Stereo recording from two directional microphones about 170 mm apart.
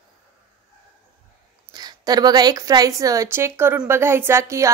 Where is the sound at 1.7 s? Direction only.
25° right (ahead or behind).